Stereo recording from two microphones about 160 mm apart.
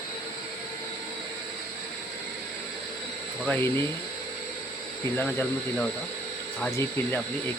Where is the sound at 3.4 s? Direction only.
10° left (ahead or behind).